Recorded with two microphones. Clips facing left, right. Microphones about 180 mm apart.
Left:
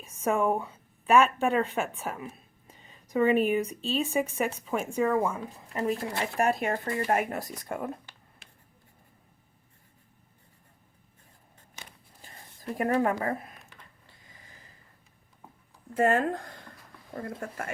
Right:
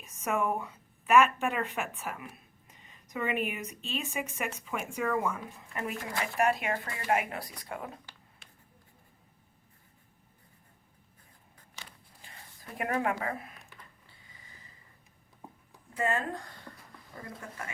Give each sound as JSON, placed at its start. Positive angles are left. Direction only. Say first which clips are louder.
{"t": 0.0, "sound": "speech", "louder": "left 5 dB", "side_deg": 30}
{"t": 12.2, "sound": "a sound", "louder": "left 10 dB", "side_deg": 40}
{"t": 16.0, "sound": "speech", "louder": "left 7 dB", "side_deg": 50}